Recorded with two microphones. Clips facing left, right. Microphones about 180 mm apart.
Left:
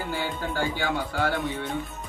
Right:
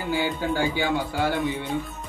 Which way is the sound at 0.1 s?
10° right (ahead or behind).